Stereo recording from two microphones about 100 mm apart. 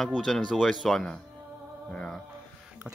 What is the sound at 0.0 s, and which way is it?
Speech, centre (ahead or behind).